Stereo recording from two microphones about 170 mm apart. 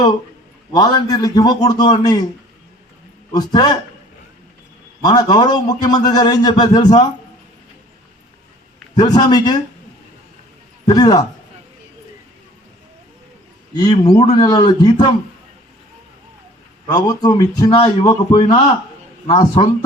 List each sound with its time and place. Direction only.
0.8 s a man's voice: 25° left (ahead or behind)
3.3 s a man's voice: 25° left (ahead or behind)
5.0 s a man's voice: 25° left (ahead or behind)
9.0 s a man's voice: 25° left (ahead or behind)
10.8 s a man's voice: 25° left (ahead or behind)
13.7 s a man's voice: 20° left (ahead or behind)
16.9 s a man's voice: 20° left (ahead or behind)
17.7 s a man's voice: 30° left (ahead or behind)